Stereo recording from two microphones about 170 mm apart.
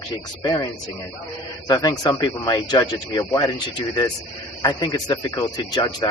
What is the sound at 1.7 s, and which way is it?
Speech, 20° left (ahead or behind).